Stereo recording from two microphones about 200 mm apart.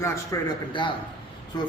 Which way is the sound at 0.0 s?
20° left (ahead or behind).